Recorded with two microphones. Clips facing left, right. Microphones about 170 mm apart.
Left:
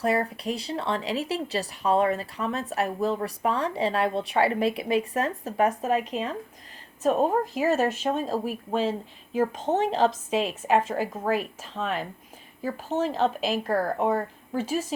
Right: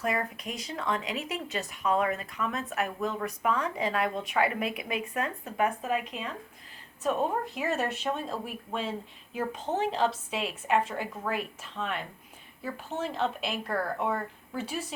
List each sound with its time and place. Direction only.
0.0 s speech: 35° left (ahead or behind)